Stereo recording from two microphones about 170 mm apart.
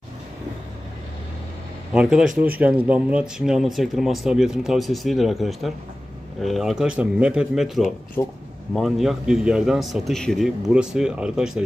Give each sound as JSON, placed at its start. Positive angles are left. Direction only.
{"t": 1.9, "sound": "speech", "side_deg": -5}
{"t": 8.2, "sound": "speech", "side_deg": 15}
{"t": 8.7, "sound": "speech", "side_deg": 0}